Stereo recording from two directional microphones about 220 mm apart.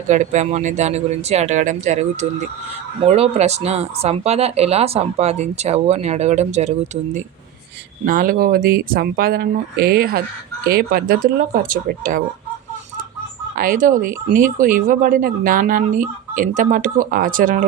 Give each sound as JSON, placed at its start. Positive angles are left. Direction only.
{"t": 0.1, "sound": "speech", "side_deg": -35}
{"t": 13.6, "sound": "speech", "side_deg": -40}